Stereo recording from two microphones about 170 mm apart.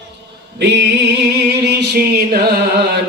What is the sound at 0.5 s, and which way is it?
Music, 90° right.